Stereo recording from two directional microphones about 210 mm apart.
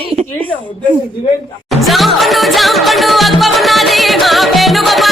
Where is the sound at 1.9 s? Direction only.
Centre (ahead or behind).